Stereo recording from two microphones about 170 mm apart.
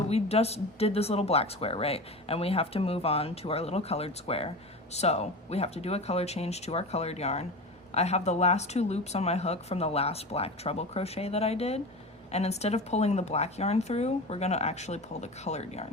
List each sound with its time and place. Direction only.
0.1 s speech: 35° left (ahead or behind)